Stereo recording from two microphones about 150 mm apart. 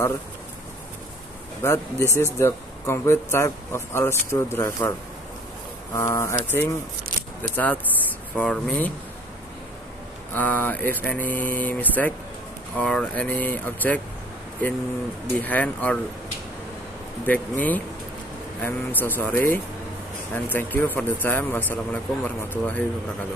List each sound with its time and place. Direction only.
1.6 s speech: 20° left (ahead or behind)
5.9 s speech: 20° left (ahead or behind)
10.3 s speech: 15° left (ahead or behind)
15.3 s speech: 10° left (ahead or behind)
17.3 s speech: 10° left (ahead or behind)